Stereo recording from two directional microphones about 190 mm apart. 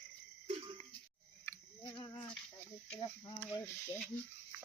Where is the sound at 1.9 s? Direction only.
25° left (ahead or behind).